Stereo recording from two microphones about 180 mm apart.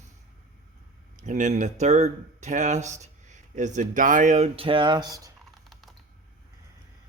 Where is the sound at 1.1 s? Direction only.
45° right (ahead or behind); by 5.3 s 20° right (ahead or behind).